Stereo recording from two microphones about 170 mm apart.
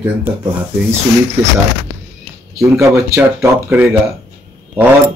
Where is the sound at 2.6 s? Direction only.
15° right (ahead or behind).